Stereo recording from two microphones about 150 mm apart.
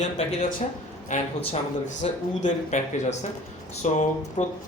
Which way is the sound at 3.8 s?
50° left (ahead or behind).